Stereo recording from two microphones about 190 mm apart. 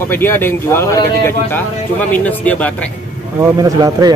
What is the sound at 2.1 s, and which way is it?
Speech, 10° left (ahead or behind).